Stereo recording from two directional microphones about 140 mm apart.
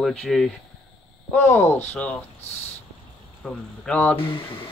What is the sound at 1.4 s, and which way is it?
Speech, 20° left (ahead or behind).